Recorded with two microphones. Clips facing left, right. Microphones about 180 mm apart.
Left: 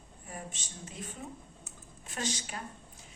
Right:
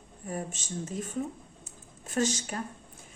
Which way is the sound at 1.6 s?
45° right (ahead or behind).